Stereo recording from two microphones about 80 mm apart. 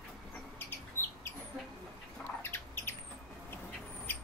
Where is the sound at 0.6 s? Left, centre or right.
Left.